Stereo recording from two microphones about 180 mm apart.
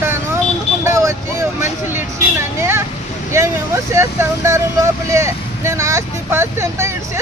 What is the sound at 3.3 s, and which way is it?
Vehicle, 15° right (ahead or behind).